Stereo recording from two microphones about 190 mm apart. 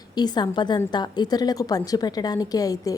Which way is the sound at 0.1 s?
20° left (ahead or behind).